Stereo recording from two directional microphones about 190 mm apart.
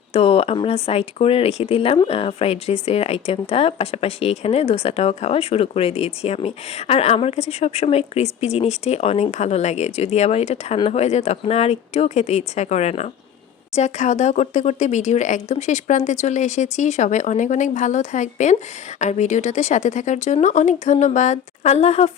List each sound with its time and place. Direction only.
0.1 s speech: 30° left (ahead or behind)